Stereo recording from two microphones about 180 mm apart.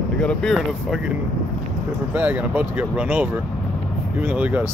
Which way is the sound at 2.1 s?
10° right (ahead or behind).